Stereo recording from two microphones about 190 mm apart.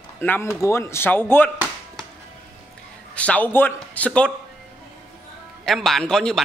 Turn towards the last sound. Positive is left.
turn(degrees=5)  # may be behind; listen again after turning